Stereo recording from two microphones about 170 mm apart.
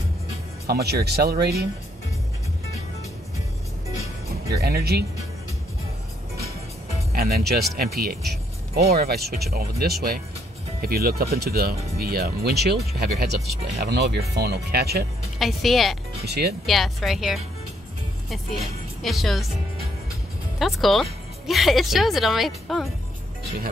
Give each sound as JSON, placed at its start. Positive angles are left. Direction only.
{"t": 0.7, "sound": "speech", "side_deg": -70}
{"t": 4.5, "sound": "speech", "side_deg": -70}
{"t": 7.1, "sound": "speech", "side_deg": -65}
{"t": 15.3, "sound": "speech", "side_deg": 0}
{"t": 16.3, "sound": "speech", "side_deg": -70}
{"t": 16.6, "sound": "speech", "side_deg": 0}
{"t": 20.5, "sound": "speech", "side_deg": 0}